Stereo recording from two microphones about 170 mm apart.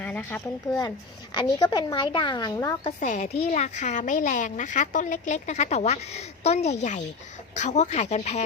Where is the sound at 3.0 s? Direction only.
45° left (ahead or behind).